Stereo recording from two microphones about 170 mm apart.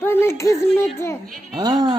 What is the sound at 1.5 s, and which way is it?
Speech, 25° right (ahead or behind).